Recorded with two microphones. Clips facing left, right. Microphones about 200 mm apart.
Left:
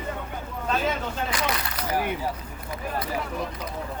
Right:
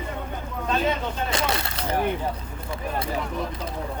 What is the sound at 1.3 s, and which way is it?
Speech, 25° right (ahead or behind).